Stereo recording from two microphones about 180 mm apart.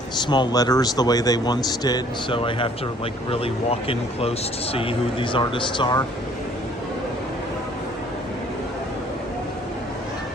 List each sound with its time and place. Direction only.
0.3 s speech: 25° left (ahead or behind)